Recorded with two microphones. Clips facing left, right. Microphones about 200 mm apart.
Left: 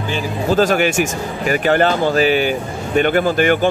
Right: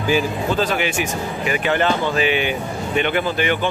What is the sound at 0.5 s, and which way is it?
Speech, 45° left (ahead or behind).